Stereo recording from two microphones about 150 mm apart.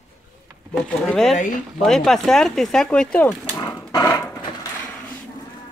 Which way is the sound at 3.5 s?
20° left (ahead or behind).